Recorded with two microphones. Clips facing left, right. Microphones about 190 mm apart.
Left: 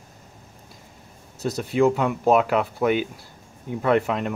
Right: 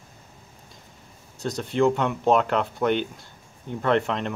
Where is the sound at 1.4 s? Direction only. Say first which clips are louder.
Left 2 dB; 5° left (ahead or behind).